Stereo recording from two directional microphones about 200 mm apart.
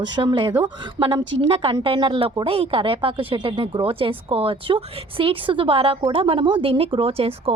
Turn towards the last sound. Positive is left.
turn(degrees=-30)  # may be behind; listen again after turning